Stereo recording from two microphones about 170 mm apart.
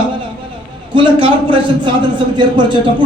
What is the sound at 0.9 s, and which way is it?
A man's voice, 30° right (ahead or behind).